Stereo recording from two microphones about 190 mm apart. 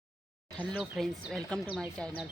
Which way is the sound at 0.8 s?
Centre (ahead or behind).